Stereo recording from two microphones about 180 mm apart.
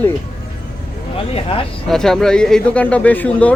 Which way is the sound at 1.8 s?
Centre (ahead or behind).